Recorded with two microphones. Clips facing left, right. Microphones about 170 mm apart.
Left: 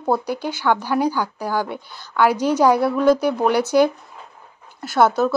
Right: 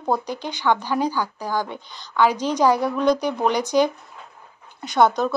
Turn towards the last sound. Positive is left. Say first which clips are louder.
# left 2 dB
turn(degrees=5)  # may be behind; listen again after turning